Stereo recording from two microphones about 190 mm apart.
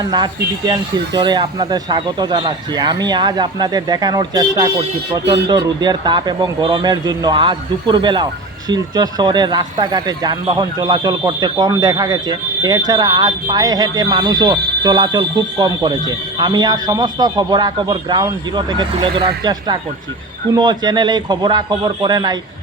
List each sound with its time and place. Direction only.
0.1 s speech: 20° right (ahead or behind)